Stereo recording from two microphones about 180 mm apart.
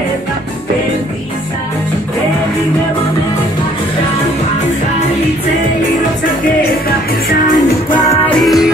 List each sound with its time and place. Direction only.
7.2 s music: 50° left (ahead or behind)
8.3 s music: centre (ahead or behind)